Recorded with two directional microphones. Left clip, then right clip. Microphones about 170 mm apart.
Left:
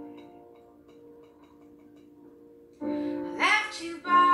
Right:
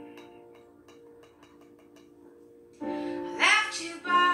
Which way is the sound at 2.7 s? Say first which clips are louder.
Left 2 dB; 10° right (ahead or behind).